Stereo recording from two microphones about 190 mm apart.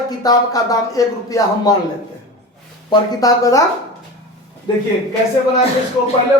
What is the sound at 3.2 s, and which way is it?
Speech, 20° left (ahead or behind).